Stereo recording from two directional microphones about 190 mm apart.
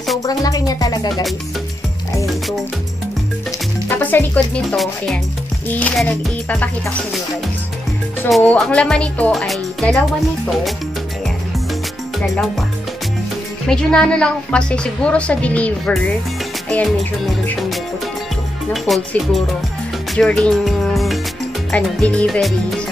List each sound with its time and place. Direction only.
0.2 s speech: 20° left (ahead or behind)
3.9 s music: 10° left (ahead or behind)
4.6 s a woman's voice: centre (ahead or behind)
8.3 s a woman's voice: centre (ahead or behind)
13.7 s a woman's voice: 5° left (ahead or behind)
16.6 s music: 5° left (ahead or behind)
18.7 s a woman's voice: centre (ahead or behind)
20.2 s music: 5° left (ahead or behind)
21.7 s a woman's voice: 5° left (ahead or behind)